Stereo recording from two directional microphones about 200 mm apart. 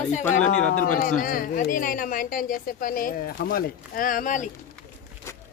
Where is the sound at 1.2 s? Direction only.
45° left (ahead or behind).